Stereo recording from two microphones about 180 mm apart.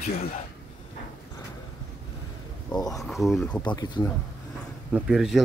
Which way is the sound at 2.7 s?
20° left (ahead or behind).